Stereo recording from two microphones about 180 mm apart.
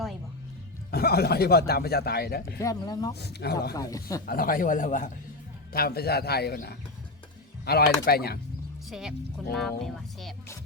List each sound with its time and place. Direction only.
0.9 s speech: 60° left (ahead or behind)
2.6 s speech: 20° left (ahead or behind)
3.2 s speech: 65° left (ahead or behind)
3.8 s speech: 20° left (ahead or behind)
4.3 s speech: 50° left (ahead or behind)
5.7 s speech: 60° left (ahead or behind)
8.9 s speech: centre (ahead or behind)